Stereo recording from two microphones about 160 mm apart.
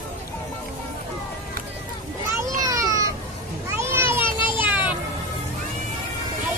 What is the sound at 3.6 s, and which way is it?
Children playing, 15° right (ahead or behind).